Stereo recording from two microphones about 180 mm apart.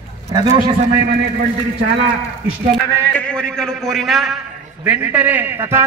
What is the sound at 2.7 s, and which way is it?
A man's voice, 5° left (ahead or behind).